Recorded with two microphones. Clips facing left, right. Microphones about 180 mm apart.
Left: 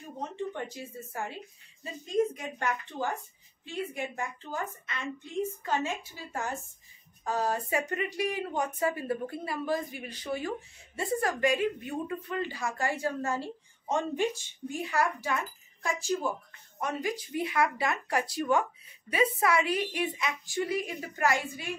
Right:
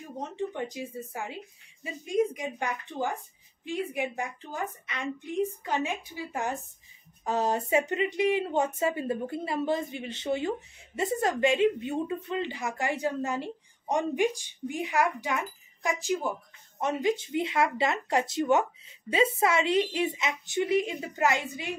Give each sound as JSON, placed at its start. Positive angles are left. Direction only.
{"t": 0.7, "sound": "a woman's voice", "side_deg": -15}